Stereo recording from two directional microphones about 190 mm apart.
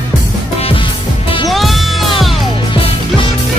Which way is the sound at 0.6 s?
30° left (ahead or behind).